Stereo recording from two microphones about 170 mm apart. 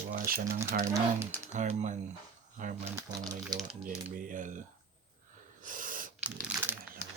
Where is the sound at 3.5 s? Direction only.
25° right (ahead or behind).